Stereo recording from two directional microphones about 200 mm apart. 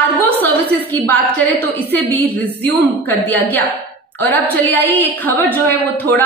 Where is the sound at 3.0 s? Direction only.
10° left (ahead or behind).